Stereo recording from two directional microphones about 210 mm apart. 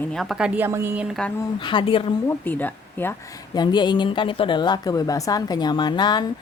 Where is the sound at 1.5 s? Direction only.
20° left (ahead or behind).